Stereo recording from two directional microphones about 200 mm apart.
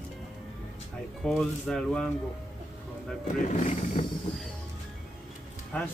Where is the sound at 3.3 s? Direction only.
40° left (ahead or behind).